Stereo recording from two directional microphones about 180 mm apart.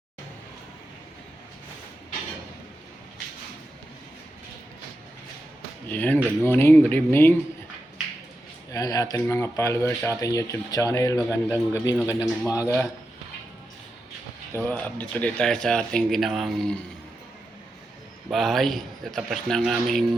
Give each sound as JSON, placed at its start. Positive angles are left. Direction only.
{"t": 5.9, "sound": "speech", "side_deg": 10}
{"t": 8.7, "sound": "speech", "side_deg": 20}
{"t": 14.5, "sound": "speech", "side_deg": 10}
{"t": 18.3, "sound": "speech", "side_deg": 0}